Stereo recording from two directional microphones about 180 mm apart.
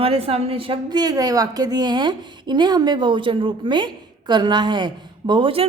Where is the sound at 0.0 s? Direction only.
35° right (ahead or behind).